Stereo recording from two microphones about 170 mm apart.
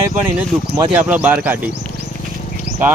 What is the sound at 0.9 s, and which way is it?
Speech, 10° right (ahead or behind).